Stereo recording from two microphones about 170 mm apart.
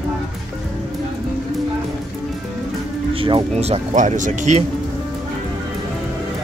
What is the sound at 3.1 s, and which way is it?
Speech, 30° right (ahead or behind).